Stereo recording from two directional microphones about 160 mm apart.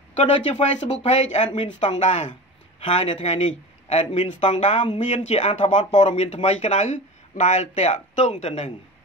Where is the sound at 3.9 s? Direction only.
45° left (ahead or behind).